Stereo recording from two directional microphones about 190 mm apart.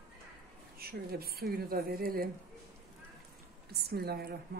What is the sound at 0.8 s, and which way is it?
Speech, 55° right (ahead or behind).